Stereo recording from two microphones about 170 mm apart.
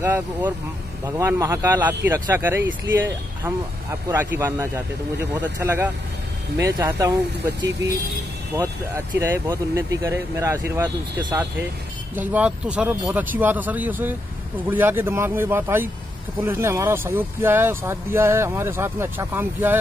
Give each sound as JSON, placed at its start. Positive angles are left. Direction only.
{"t": 0.0, "sound": "speech", "side_deg": -15}
{"t": 8.5, "sound": "speech", "side_deg": -15}
{"t": 12.2, "sound": "speech", "side_deg": -10}